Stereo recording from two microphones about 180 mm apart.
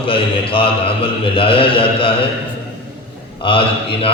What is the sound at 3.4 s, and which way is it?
Speech, 30° left (ahead or behind).